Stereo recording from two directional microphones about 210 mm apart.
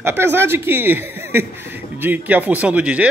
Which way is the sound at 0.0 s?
10° right (ahead or behind).